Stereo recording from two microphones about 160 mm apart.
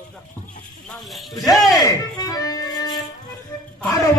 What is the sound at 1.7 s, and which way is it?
Music, 25° left (ahead or behind).